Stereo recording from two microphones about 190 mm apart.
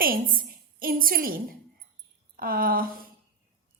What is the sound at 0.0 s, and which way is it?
A woman's voice, 50° right (ahead or behind).